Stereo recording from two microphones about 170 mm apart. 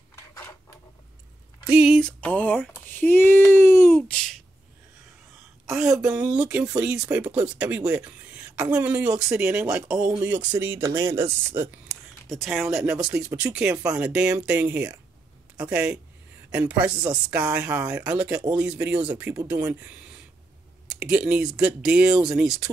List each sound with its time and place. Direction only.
0.3 s a sound: 15° left (ahead or behind)
1.6 s a sound: 5° right (ahead or behind); by 4.2 s 15° left (ahead or behind)
5.8 s speech: 5° right (ahead or behind)
10.8 s speech: 25° right (ahead or behind)
11.5 s speech: 10° right (ahead or behind)
12.3 s speech: centre (ahead or behind)